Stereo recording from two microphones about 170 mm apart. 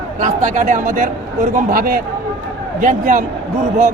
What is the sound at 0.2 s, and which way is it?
A man's voice, 45° right (ahead or behind).